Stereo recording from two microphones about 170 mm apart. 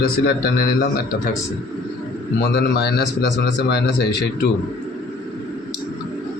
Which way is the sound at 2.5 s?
65° left (ahead or behind).